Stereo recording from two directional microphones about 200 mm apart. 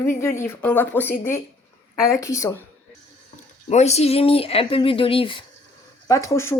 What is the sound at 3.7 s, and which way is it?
Speech, 35° left (ahead or behind).